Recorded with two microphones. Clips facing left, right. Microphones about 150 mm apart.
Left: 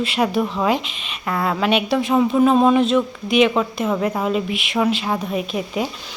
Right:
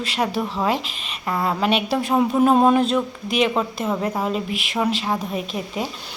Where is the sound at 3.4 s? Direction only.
5° right (ahead or behind).